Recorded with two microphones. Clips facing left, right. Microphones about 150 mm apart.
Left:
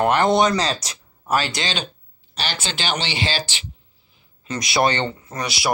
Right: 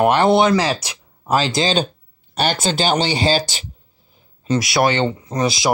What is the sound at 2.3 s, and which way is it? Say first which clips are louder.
Speech: right 9 dB; 50° right (ahead or behind).